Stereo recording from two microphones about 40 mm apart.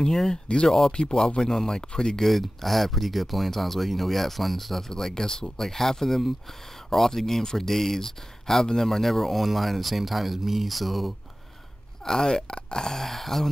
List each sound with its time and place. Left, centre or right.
0.0 s speech: centre
0.9 s speech: centre
2.2 s speech: centre
12.0 s speech: centre